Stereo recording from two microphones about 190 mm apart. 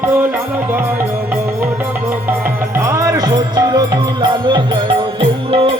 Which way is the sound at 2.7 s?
15° right (ahead or behind).